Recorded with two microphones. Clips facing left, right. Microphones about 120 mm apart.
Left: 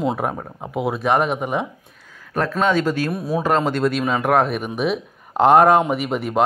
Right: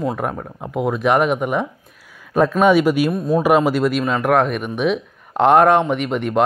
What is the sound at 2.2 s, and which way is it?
Speech, 15° right (ahead or behind).